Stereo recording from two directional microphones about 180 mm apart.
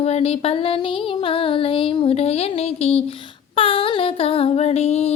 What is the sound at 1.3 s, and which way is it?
Music, 30° left (ahead or behind).